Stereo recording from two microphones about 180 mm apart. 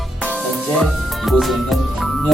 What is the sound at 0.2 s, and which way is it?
Music, 10° right (ahead or behind).